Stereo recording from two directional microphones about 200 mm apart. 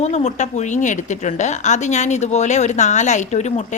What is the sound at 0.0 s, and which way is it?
Speech, 35° left (ahead or behind).